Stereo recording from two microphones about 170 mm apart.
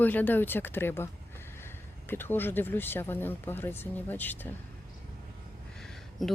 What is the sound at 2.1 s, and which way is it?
Speech, 10° left (ahead or behind).